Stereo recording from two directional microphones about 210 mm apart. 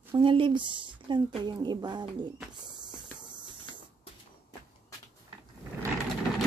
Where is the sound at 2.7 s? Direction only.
20° right (ahead or behind).